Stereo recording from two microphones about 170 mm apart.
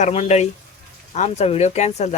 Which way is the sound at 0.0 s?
40° left (ahead or behind).